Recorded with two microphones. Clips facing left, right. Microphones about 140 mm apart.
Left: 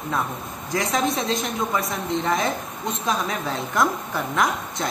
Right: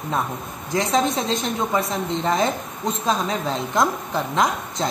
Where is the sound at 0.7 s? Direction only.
25° right (ahead or behind).